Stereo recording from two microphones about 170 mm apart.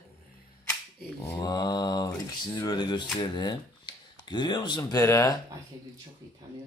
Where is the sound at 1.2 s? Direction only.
20° left (ahead or behind).